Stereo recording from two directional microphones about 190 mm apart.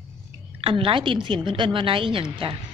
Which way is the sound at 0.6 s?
30° right (ahead or behind).